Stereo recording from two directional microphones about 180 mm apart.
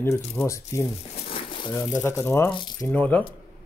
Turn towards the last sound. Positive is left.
turn(degrees=10)  # may be behind; listen again after turning